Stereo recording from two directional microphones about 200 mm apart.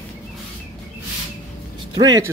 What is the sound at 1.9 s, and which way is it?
Speech, 20° right (ahead or behind).